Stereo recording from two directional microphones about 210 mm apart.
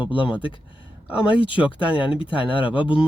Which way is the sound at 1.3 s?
25° left (ahead or behind).